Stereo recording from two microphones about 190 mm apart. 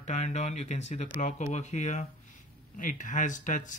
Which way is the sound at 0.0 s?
40° left (ahead or behind).